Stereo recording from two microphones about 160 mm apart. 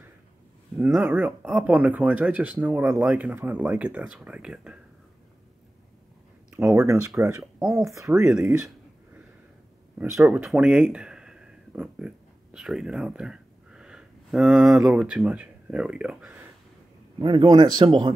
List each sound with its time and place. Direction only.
0.7 s speech: 10° right (ahead or behind)
6.6 s speech: 15° right (ahead or behind)
9.9 s speech: 5° right (ahead or behind)
17.2 s speech: 30° right (ahead or behind)